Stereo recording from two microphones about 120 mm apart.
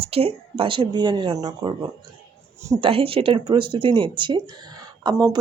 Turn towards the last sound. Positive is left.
turn(degrees=-35)  # may be behind; listen again after turning